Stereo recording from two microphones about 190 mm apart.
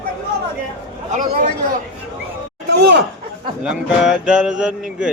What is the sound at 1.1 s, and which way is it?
Speech, 45° right (ahead or behind).